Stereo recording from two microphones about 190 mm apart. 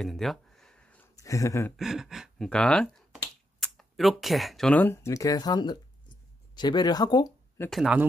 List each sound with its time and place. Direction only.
0.0 s a sound: centre (ahead or behind)
1.1 s speech: 15° left (ahead or behind)
1.8 s speech: centre (ahead or behind); by 7.7 s 15° left (ahead or behind)
7.7 s speech: 5° right (ahead or behind)